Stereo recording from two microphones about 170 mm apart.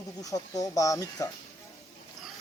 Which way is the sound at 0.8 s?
20° left (ahead or behind).